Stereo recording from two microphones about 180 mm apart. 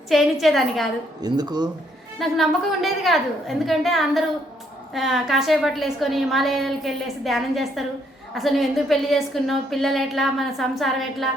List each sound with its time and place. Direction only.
0.1 s a woman's voice: centre (ahead or behind)
1.2 s speech: 20° right (ahead or behind)
2.1 s a woman's voice: centre (ahead or behind)